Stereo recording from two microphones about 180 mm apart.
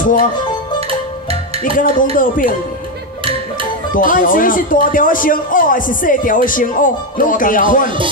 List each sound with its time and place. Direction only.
0.0 s speech: 50° left (ahead or behind)
2.1 s speech: 50° left (ahead or behind)
3.9 s speech: 50° left (ahead or behind)